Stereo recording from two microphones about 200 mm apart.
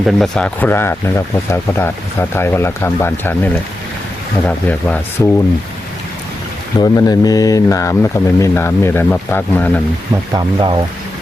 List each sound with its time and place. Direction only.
0.0 s speech: centre (ahead or behind)
6.7 s speech: 20° left (ahead or behind)
10.3 s speech: 25° right (ahead or behind)